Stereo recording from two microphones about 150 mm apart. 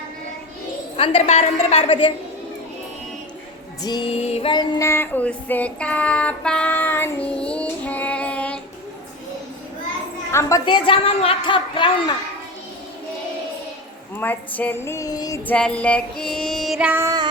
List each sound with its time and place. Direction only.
0.9 s a woman's voice: 40° left (ahead or behind)
3.8 s music: 30° left (ahead or behind)
4.1 s female singing: 45° left (ahead or behind)
4.5 s female singing: 20° left (ahead or behind)
10.3 s speech: 20° left (ahead or behind)
10.7 s a woman's voice: 35° left (ahead or behind)
14.2 s speech: 10° left (ahead or behind)
15.4 s female singing: 10° left (ahead or behind); by 17.1 s 10° right (ahead or behind)